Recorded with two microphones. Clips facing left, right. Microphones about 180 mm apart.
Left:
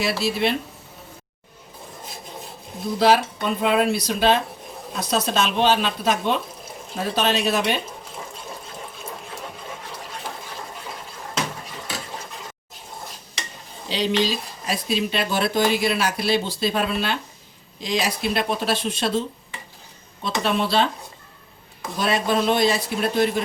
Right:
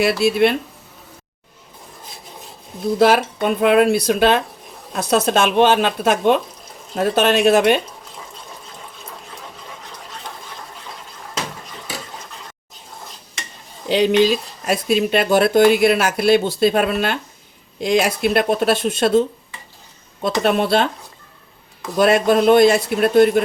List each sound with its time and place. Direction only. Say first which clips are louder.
0.0 s speech: right 7 dB; 60° right (ahead or behind)
3.0 s speech: right 3 dB; 55° right (ahead or behind)
13.8 s speech: right 8 dB; 55° right (ahead or behind)
20.2 s speech: right 6 dB; 55° right (ahead or behind)
21.9 s speech: right 8 dB; 55° right (ahead or behind)